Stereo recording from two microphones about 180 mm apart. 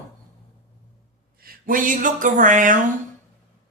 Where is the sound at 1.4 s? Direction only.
50° right (ahead or behind).